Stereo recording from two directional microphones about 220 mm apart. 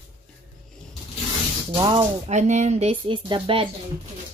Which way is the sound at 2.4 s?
30° right (ahead or behind).